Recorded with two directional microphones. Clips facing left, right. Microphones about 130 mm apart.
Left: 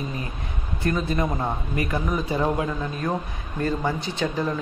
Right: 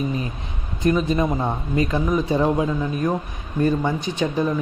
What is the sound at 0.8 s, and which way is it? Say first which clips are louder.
Speech: right 5 dB; 20° right (ahead or behind).